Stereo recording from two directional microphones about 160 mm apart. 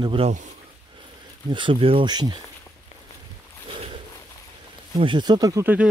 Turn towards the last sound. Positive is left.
turn(degrees=-15)  # may be behind; listen again after turning